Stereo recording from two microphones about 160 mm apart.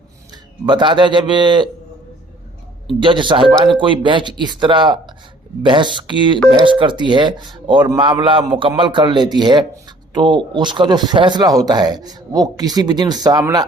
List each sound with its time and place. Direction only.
0.6 s speech: 30° right (ahead or behind)
3.0 s a man's voice: 30° right (ahead or behind)